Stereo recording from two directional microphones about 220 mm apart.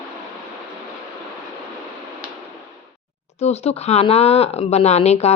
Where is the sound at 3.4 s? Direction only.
30° left (ahead or behind).